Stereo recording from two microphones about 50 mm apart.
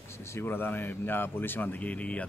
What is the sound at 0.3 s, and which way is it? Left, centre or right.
Speech, left.